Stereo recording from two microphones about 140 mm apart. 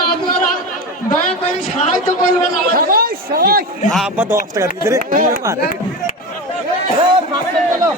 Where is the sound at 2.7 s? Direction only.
90° right.